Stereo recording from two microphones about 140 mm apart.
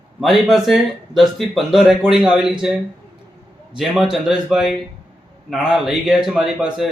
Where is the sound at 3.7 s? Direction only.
5° right (ahead or behind).